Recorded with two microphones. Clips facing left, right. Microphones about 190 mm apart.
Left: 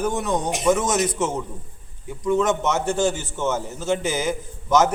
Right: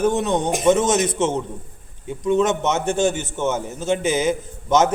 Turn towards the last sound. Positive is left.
turn(degrees=-20)  # may be behind; listen again after turning